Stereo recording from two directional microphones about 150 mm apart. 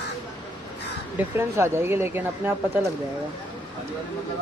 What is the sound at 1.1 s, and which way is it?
Speech, 15° right (ahead or behind).